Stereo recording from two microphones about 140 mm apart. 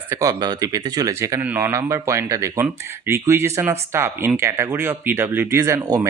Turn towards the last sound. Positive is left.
turn(degrees=-20)  # may be behind; listen again after turning